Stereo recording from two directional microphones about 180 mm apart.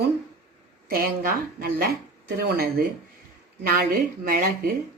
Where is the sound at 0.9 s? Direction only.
55° right (ahead or behind).